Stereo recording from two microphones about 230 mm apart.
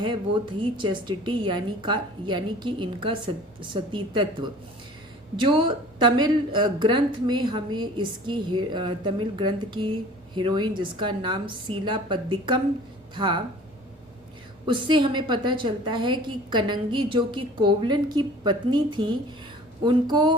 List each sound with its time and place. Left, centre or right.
0.6 s a woman's voice: right
14.7 s a woman's voice: right